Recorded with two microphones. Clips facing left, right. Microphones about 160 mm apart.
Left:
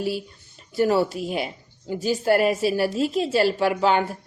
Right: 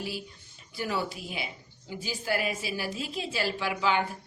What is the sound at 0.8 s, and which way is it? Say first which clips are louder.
Speech: left 12 dB; 45° left (ahead or behind).